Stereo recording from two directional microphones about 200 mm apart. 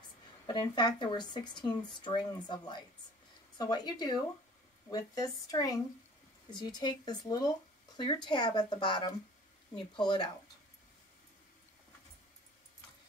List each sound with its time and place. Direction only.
0.5 s a woman's voice: 20° left (ahead or behind)